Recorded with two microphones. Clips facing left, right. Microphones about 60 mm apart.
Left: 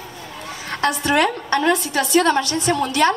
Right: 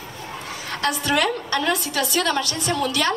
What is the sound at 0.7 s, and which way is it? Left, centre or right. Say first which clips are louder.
A woman's voice: left 3 dB; left.